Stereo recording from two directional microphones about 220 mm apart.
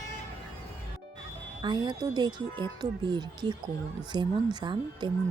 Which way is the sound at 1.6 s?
20° right (ahead or behind).